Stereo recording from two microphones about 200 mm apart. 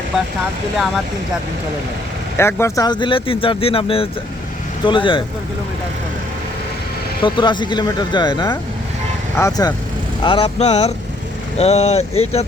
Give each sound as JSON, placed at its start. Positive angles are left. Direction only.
{"t": 2.4, "sound": "speech", "side_deg": 10}
{"t": 7.2, "sound": "speech", "side_deg": 25}